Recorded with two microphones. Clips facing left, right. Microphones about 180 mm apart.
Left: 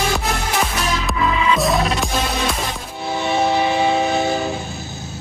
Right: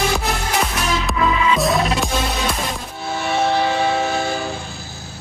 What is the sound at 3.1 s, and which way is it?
Train, 20° left (ahead or behind).